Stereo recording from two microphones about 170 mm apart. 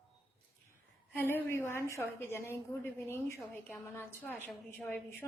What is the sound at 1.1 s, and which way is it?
A woman's voice, 10° left (ahead or behind).